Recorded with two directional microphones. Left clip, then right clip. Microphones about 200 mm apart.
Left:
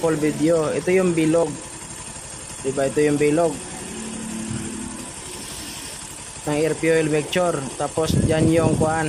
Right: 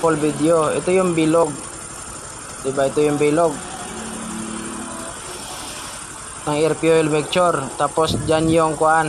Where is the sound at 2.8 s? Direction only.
15° left (ahead or behind).